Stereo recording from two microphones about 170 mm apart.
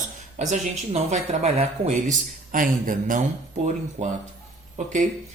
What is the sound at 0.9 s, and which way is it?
Speech, 40° right (ahead or behind).